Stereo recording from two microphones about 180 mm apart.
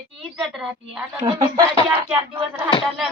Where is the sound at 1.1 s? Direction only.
20° right (ahead or behind).